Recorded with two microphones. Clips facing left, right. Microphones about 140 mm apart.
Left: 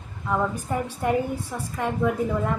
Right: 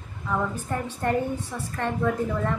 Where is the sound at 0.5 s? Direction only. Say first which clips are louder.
Left 2 dB; 10° left (ahead or behind).